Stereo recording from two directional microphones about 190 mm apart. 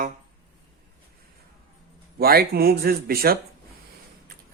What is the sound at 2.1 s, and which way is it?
Speech, 55° right (ahead or behind).